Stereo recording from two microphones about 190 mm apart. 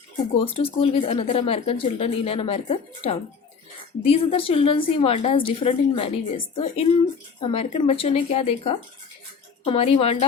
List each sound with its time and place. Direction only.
0.5 s a woman's voice: 30° left (ahead or behind)